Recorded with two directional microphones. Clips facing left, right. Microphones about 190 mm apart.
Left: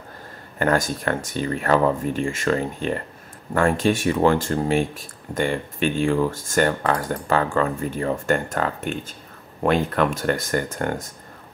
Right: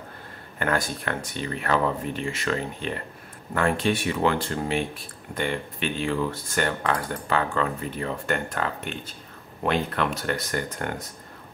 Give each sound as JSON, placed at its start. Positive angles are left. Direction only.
{"t": 0.6, "sound": "speech", "side_deg": 40}